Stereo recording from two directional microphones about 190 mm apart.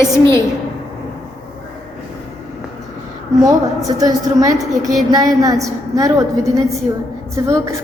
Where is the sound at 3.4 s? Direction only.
20° right (ahead or behind).